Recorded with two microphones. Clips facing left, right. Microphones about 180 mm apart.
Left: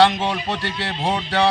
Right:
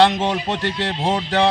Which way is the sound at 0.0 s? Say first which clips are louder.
Right 1 dB; 20° right (ahead or behind).